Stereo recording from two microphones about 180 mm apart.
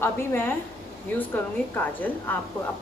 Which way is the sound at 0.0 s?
10° left (ahead or behind).